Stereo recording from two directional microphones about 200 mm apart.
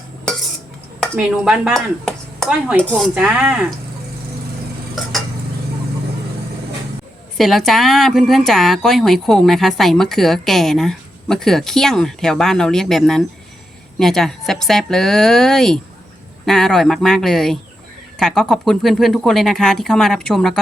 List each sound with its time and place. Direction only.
1.1 s a woman's voice: 5° right (ahead or behind)
7.3 s a woman's voice: centre (ahead or behind)